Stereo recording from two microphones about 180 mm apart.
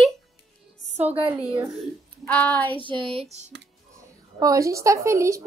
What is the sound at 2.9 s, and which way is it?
Speech, 30° right (ahead or behind).